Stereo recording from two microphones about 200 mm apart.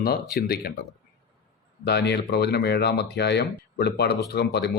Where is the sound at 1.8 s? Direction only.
55° left (ahead or behind).